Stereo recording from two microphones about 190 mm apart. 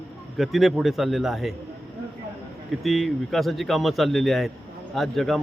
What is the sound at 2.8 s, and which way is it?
A man's voice, centre (ahead or behind).